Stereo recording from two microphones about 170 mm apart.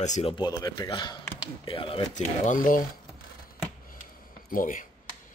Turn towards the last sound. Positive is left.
turn(degrees=55)  # may be behind; listen again after turning